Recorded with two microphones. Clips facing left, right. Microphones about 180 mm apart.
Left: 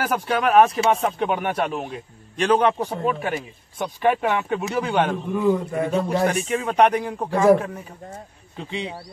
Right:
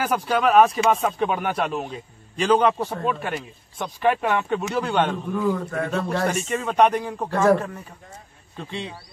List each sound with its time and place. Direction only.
0.0 s a man's voice: centre (ahead or behind)
2.8 s speech: 10° left (ahead or behind)
6.2 s a man's voice: centre (ahead or behind)